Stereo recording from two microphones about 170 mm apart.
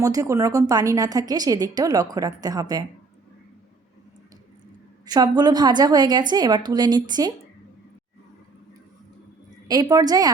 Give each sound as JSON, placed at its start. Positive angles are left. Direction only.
{"t": 0.0, "sound": "a woman's voice", "side_deg": -20}
{"t": 5.0, "sound": "a woman's voice", "side_deg": -25}
{"t": 9.6, "sound": "a woman's voice", "side_deg": -25}